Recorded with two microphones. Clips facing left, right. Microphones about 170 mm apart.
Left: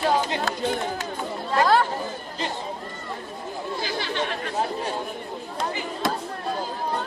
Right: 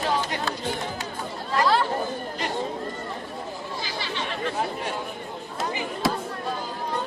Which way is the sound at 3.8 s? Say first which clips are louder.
Left 4 dB; 50° left (ahead or behind).